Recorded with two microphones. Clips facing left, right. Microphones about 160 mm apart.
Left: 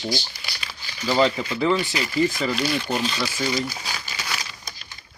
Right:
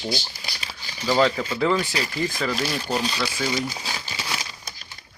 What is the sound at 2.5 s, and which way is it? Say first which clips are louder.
Speech: left 1 dB; 35° right (ahead or behind).